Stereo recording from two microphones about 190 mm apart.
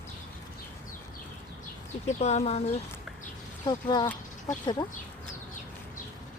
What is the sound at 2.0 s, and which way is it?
Speech, 35° left (ahead or behind).